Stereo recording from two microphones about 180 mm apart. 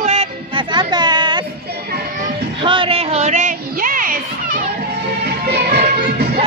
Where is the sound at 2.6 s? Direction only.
25° right (ahead or behind); by 4.6 s 50° right (ahead or behind).